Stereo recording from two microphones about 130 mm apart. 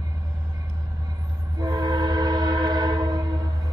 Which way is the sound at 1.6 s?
35° right (ahead or behind).